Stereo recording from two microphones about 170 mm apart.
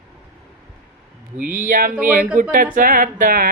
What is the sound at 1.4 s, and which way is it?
Speech, 50° right (ahead or behind).